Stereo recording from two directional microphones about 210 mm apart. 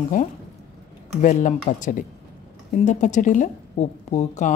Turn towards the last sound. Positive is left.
turn(degrees=35)  # may be behind; listen again after turning